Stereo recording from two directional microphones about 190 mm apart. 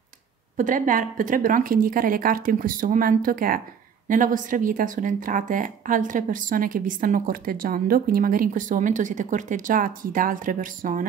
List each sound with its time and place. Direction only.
0.6 s a woman's voice: 45° right (ahead or behind)